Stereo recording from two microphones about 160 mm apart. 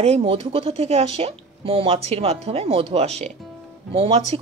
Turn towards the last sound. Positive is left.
turn(degrees=-35)  # may be behind; listen again after turning